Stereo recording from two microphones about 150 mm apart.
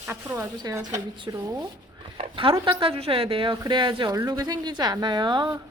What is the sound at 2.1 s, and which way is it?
A woman's voice, 35° right (ahead or behind).